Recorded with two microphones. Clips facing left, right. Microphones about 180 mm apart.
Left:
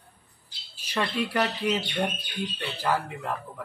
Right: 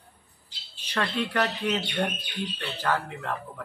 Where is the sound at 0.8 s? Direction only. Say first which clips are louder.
Even; 10° left (ahead or behind).